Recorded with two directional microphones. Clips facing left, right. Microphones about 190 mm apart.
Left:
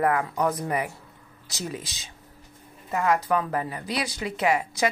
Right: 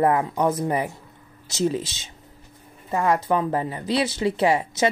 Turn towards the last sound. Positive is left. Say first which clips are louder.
# right 3 dB
turn(degrees=-30)  # may be behind; listen again after turning